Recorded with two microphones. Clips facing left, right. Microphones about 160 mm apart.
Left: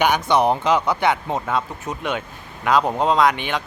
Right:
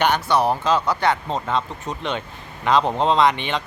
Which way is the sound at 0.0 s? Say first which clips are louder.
Left 1 dB; 15° left (ahead or behind).